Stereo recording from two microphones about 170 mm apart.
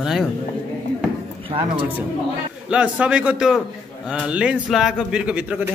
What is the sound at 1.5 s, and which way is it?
Speech, 30° right (ahead or behind).